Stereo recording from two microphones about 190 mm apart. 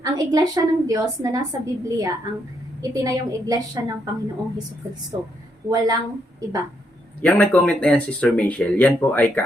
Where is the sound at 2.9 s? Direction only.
20° right (ahead or behind).